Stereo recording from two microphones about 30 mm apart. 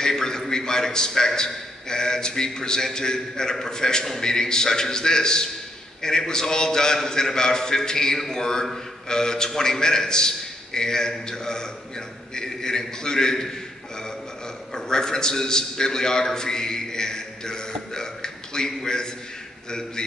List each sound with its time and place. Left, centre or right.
0.0 s a sound: left
0.5 s a man's voice: left
14.9 s a man's voice: left